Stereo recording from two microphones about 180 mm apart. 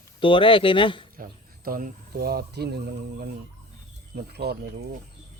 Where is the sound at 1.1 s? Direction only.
55° right (ahead or behind).